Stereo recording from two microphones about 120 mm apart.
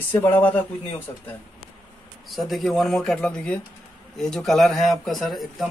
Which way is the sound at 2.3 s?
Centre (ahead or behind).